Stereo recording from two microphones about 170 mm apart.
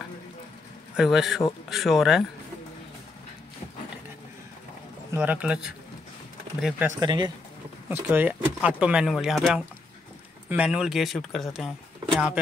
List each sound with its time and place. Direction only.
0.9 s speech: centre (ahead or behind)
5.1 s speech: 10° right (ahead or behind)
7.0 s speech: 25° right (ahead or behind)
7.9 s speech: 10° right (ahead or behind)